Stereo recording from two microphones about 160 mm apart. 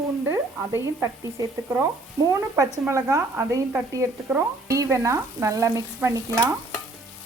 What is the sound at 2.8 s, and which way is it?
Frying, 20° right (ahead or behind).